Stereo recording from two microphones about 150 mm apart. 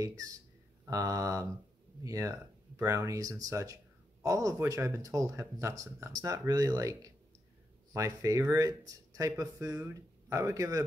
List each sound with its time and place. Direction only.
0.0 s speech: 25° right (ahead or behind)